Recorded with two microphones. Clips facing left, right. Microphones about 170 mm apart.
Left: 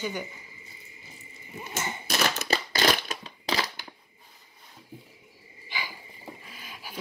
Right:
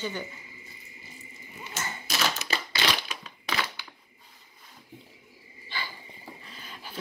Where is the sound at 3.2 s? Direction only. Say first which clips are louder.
Left 2 dB; 35° left (ahead or behind).